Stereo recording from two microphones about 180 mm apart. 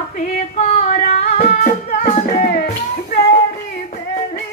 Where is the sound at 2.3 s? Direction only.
55° left (ahead or behind).